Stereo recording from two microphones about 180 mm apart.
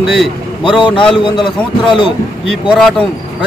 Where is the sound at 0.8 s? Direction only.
25° left (ahead or behind).